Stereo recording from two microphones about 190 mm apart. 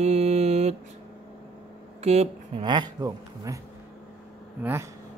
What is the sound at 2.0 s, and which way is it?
Speech, 35° right (ahead or behind).